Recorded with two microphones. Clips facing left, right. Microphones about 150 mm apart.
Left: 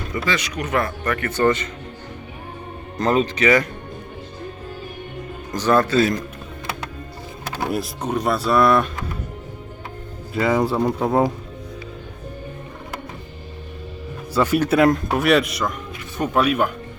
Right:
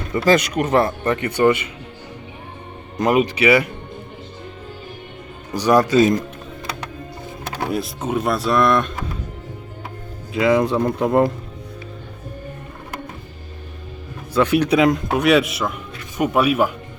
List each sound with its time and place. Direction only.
0.3 s speech: 50° right (ahead or behind)
0.7 s speech: 30° right (ahead or behind); by 1.7 s 10° right (ahead or behind)
3.0 s speech: 10° right (ahead or behind)
5.5 s speech: 10° right (ahead or behind)
7.7 s speech: centre (ahead or behind)
10.4 s speech: 5° left (ahead or behind)
14.3 s speech: 10° left (ahead or behind); by 16.7 s 5° right (ahead or behind)